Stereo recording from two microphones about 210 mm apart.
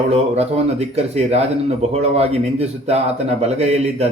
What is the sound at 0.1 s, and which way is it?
Speech, 30° right (ahead or behind).